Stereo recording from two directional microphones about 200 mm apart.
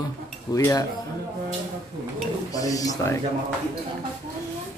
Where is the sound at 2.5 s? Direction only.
15° left (ahead or behind).